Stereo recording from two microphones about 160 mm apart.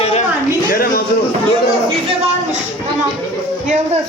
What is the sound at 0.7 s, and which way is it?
Speech, 65° left (ahead or behind).